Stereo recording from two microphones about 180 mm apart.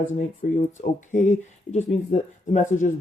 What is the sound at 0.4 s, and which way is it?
Speech, 45° left (ahead or behind).